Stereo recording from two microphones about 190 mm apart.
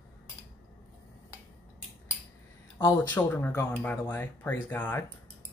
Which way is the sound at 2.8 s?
10° left (ahead or behind).